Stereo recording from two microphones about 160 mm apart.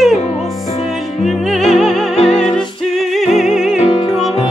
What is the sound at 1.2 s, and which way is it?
Music, centre (ahead or behind).